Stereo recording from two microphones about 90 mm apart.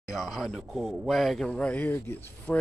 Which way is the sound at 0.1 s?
Centre (ahead or behind).